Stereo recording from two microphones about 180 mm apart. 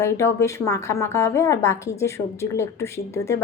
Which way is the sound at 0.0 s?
15° left (ahead or behind).